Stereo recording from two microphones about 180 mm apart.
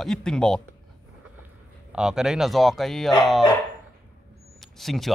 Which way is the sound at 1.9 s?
5° right (ahead or behind).